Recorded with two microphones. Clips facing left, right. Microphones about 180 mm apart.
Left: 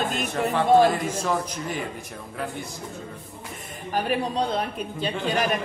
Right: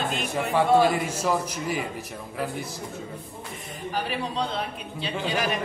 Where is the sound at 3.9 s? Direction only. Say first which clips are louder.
Left 5 dB; 45° left (ahead or behind).